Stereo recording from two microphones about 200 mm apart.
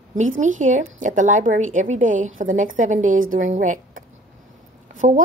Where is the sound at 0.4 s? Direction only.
40° right (ahead or behind).